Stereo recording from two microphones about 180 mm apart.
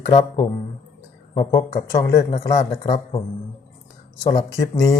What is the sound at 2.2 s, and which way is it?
Speech, 35° left (ahead or behind).